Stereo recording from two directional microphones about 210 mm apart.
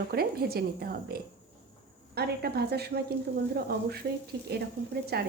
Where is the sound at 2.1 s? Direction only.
50° right (ahead or behind).